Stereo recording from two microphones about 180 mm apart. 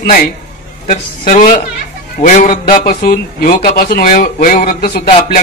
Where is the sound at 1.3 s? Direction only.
45° left (ahead or behind).